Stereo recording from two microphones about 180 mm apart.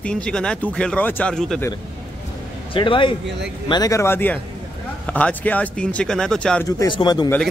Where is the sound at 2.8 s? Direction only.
30° left (ahead or behind); by 6.7 s 5° left (ahead or behind).